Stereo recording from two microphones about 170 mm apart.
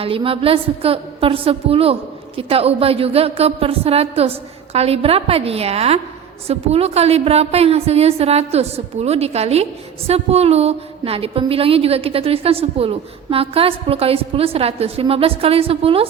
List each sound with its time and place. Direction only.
0.0 s a woman's voice: 30° right (ahead or behind)